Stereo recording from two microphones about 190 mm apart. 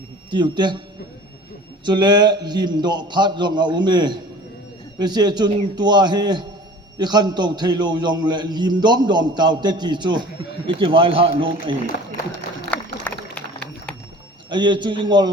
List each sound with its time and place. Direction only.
0.3 s a man's voice: 25° right (ahead or behind)
1.8 s a man's voice: 25° right (ahead or behind)
12.7 s run: 10° left (ahead or behind)
13.1 s a sound: 5° left (ahead or behind)
14.5 s a man's voice: 25° right (ahead or behind)